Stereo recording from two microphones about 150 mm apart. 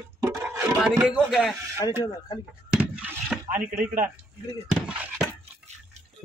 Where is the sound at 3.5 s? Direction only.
60° right (ahead or behind).